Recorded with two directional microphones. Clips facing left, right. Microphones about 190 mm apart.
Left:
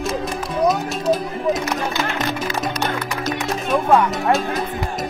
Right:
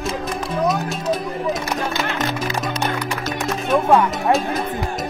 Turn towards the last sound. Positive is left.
turn(degrees=0)  # may be behind; listen again after turning